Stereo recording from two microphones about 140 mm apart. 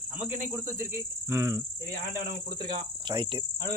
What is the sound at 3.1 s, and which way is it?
Insect, 35° right (ahead or behind).